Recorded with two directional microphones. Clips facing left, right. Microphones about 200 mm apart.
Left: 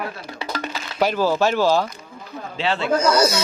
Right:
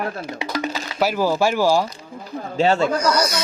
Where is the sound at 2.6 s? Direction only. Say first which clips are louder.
Right 6 dB; 45° right (ahead or behind).